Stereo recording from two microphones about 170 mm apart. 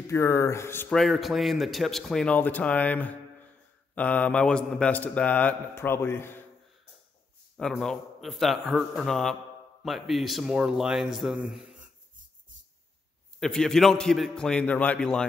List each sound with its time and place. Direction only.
0.0 s a man's voice: 15° left (ahead or behind)
0.9 s a man's voice: centre (ahead or behind)
7.5 s speech: 5° left (ahead or behind)
13.4 s speech: 5° left (ahead or behind)